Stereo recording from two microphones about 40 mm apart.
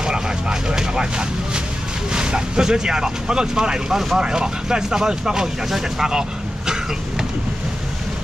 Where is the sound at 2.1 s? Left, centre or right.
Right.